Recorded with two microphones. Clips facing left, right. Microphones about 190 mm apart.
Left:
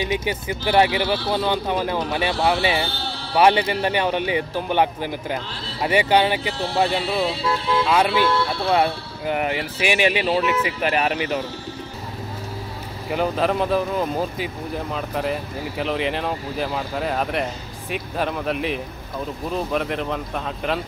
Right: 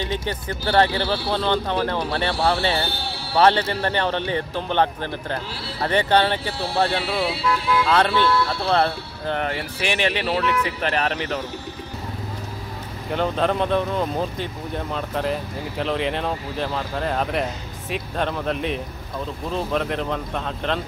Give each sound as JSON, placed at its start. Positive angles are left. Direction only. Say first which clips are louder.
{"t": 0.0, "sound": "speech", "louder": "left 3 dB", "side_deg": 15}
{"t": 7.8, "sound": "speech", "louder": "left 1 dB", "side_deg": 10}
{"t": 13.1, "sound": "speech", "louder": "left 1 dB", "side_deg": 5}